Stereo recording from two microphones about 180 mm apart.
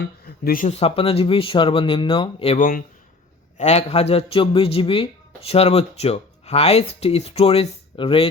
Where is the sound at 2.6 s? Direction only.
50° left (ahead or behind).